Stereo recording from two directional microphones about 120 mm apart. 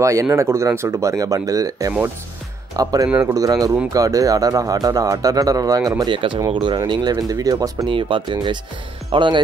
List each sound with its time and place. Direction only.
0.0 s speech: 25° right (ahead or behind)
3.1 s speech: 15° right (ahead or behind)
3.3 s speech: 30° right (ahead or behind)
6.1 s speech: 45° right (ahead or behind)
7.9 s speech: 40° right (ahead or behind)